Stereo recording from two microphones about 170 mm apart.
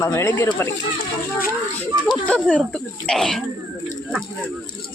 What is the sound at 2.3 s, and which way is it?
Speech, 5° left (ahead or behind).